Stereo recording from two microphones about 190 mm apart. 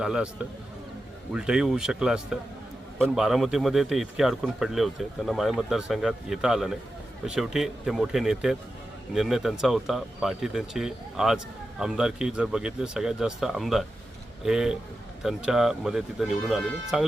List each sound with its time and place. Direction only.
0.0 s speech: 5° right (ahead or behind)